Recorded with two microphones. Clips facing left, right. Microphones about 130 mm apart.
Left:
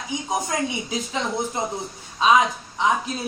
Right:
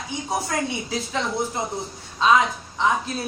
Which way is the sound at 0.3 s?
15° left (ahead or behind).